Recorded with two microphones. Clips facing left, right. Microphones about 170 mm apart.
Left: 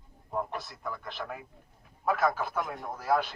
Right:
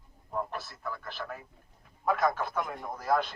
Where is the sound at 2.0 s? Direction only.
5° left (ahead or behind).